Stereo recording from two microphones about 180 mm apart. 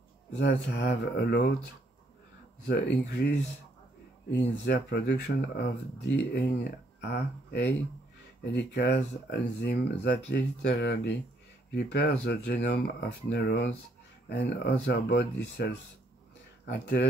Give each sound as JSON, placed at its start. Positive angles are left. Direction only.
{"t": 0.4, "sound": "speech", "side_deg": 75}
{"t": 2.6, "sound": "speech", "side_deg": 70}
{"t": 7.0, "sound": "speech", "side_deg": 65}